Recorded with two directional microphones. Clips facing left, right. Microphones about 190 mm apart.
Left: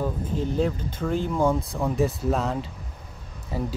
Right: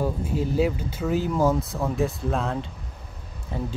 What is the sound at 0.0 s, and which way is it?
Speech, 10° right (ahead or behind).